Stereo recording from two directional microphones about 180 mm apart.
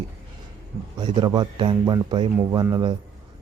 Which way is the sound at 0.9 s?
25° right (ahead or behind).